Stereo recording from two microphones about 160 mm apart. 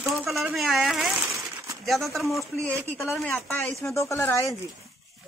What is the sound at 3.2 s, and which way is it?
A man's voice, 10° left (ahead or behind).